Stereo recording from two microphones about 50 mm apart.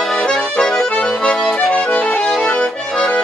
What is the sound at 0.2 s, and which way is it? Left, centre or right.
Accordion, centre.